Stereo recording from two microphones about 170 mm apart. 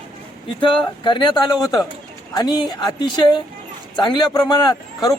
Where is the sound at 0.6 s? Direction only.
30° left (ahead or behind).